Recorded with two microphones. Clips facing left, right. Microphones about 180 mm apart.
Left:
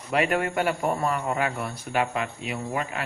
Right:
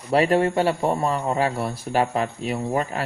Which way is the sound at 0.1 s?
30° right (ahead or behind).